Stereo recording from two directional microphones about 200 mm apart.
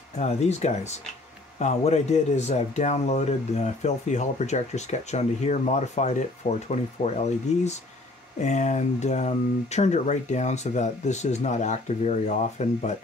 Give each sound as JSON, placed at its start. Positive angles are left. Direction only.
{"t": 0.2, "sound": "speech", "side_deg": 35}